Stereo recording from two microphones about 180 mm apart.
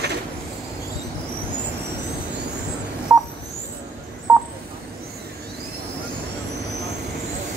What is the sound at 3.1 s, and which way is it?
Telephone dialing, 10° right (ahead or behind).